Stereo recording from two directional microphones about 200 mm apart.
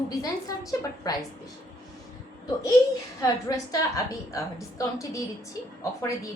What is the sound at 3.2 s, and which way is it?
A woman's voice, 15° left (ahead or behind).